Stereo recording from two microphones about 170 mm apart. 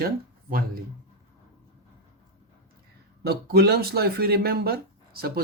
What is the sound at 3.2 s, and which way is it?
Speech, 70° right (ahead or behind).